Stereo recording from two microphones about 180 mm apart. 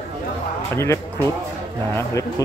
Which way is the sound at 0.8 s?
15° left (ahead or behind).